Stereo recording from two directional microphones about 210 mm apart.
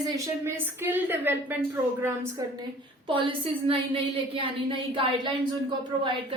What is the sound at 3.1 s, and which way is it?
A woman's voice, 25° right (ahead or behind).